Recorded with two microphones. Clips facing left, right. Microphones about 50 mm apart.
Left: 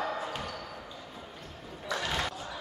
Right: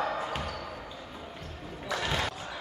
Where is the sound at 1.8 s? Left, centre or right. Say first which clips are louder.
Right 1 dB; centre.